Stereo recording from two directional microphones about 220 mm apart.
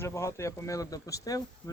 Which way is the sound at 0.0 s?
10° left (ahead or behind).